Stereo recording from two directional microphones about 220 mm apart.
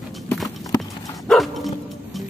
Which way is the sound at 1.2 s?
Centre (ahead or behind).